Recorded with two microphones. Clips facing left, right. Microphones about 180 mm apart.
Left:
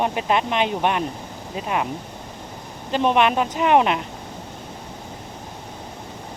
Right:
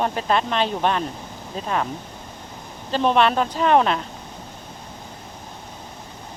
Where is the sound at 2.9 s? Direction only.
15° left (ahead or behind).